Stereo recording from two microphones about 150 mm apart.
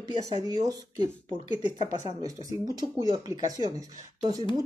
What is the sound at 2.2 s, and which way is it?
Speech, 25° right (ahead or behind).